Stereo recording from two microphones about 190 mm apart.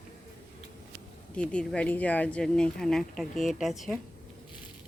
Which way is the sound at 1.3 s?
5° left (ahead or behind).